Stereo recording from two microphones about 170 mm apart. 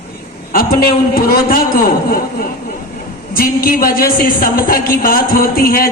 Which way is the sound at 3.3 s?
60° left (ahead or behind).